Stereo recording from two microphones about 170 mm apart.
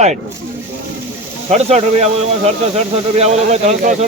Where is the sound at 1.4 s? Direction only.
40° right (ahead or behind).